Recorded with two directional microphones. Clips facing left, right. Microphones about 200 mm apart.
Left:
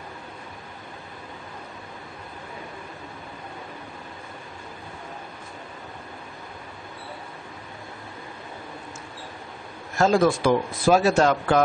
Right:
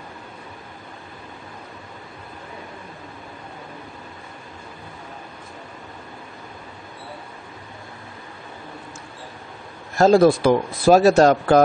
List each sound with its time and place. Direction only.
9.9 s speech: 35° right (ahead or behind)